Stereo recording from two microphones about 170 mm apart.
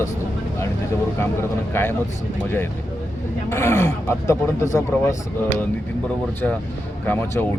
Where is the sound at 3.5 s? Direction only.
15° left (ahead or behind).